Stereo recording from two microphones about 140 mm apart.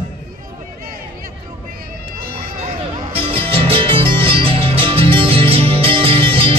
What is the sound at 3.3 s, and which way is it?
Music, 40° right (ahead or behind).